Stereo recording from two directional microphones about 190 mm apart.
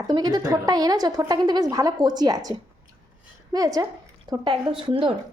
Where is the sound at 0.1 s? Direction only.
20° right (ahead or behind).